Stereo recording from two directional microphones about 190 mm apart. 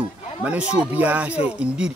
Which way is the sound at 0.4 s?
5° right (ahead or behind).